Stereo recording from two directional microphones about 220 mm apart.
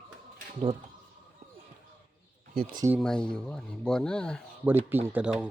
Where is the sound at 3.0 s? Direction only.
5° left (ahead or behind).